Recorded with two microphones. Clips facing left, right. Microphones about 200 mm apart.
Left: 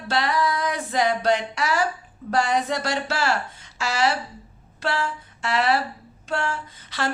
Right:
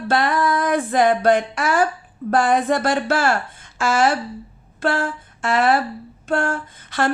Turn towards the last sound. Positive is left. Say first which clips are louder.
# right 6 dB
turn(degrees=-50)  # may be behind; listen again after turning